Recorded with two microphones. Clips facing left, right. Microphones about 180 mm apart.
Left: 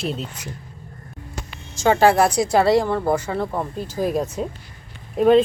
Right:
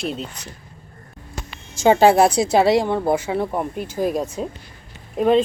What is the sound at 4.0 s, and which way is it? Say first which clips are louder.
Speech: even; centre (ahead or behind).